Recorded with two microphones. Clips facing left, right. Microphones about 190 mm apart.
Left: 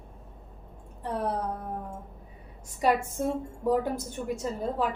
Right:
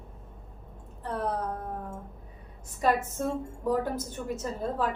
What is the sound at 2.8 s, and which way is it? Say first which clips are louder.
A woman's voice: left 1 dB; 15° left (ahead or behind).